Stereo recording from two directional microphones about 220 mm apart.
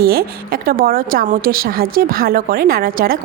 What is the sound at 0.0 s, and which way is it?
A woman's voice, 45° right (ahead or behind).